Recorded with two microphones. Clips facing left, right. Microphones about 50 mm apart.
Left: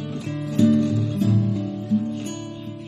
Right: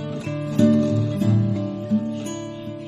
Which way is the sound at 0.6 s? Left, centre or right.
Right.